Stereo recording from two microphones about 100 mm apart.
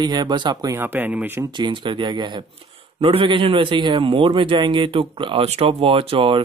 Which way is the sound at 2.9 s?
65° right (ahead or behind).